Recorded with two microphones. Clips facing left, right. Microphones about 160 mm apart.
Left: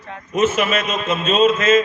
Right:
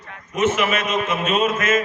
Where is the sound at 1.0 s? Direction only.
25° left (ahead or behind).